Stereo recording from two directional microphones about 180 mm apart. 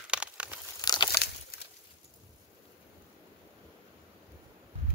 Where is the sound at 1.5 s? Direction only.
55° left (ahead or behind).